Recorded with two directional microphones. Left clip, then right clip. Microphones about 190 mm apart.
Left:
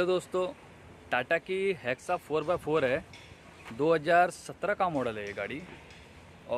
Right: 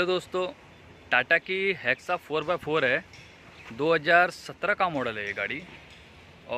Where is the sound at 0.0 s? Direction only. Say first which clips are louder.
Right 2 dB; centre (ahead or behind).